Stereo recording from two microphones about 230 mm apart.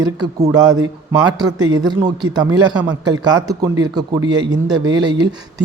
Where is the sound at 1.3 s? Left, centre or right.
Centre.